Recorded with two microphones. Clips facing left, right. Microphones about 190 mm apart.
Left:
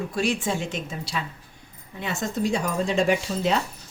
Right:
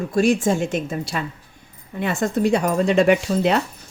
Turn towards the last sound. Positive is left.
turn(degrees=-65)  # may be behind; listen again after turning